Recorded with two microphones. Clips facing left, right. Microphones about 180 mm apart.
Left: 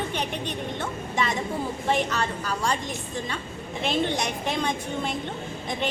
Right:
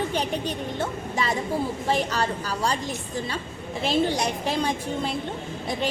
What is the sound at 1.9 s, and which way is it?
Speech, 35° right (ahead or behind).